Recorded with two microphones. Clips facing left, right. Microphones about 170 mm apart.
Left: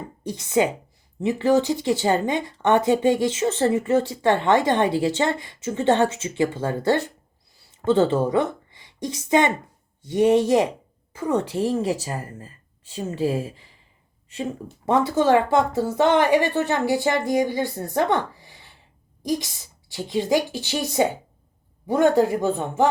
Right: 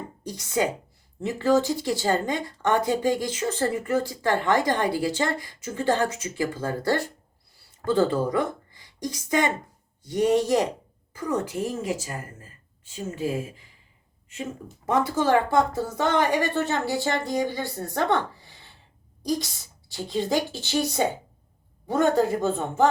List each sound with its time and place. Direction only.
0.3 s a woman's voice: 20° left (ahead or behind)
14.8 s a woman's voice: 25° left (ahead or behind)
20.1 s a woman's voice: 15° left (ahead or behind)